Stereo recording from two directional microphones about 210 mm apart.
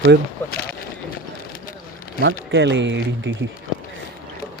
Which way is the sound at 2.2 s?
55° right (ahead or behind).